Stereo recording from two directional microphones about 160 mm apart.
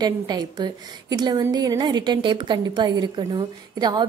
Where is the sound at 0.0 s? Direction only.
25° right (ahead or behind).